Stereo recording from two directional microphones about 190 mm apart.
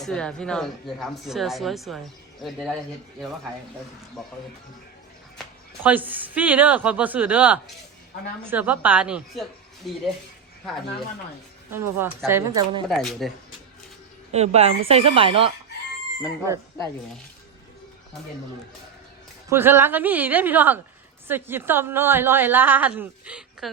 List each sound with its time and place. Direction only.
0.0 s speech: 5° left (ahead or behind)
4.2 s speech: centre (ahead or behind)
5.8 s a woman's voice: 10° right (ahead or behind)
11.7 s a woman's voice: 10° right (ahead or behind)
12.9 s speech: centre (ahead or behind)
14.3 s speech: 35° right (ahead or behind)
16.5 s a woman's voice: 15° right (ahead or behind)
19.5 s a woman's voice: 10° right (ahead or behind)